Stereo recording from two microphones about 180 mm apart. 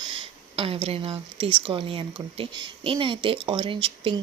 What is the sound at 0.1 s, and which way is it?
Speech, 30° right (ahead or behind).